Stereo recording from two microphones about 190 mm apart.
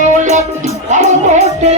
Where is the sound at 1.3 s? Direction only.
35° right (ahead or behind).